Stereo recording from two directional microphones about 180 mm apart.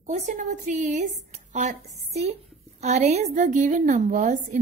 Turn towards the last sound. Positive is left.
turn(degrees=-45)  # may be behind; listen again after turning